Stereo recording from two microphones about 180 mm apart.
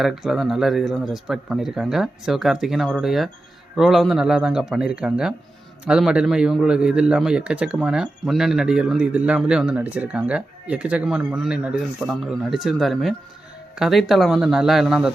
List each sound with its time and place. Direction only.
0.0 s a man's voice: centre (ahead or behind)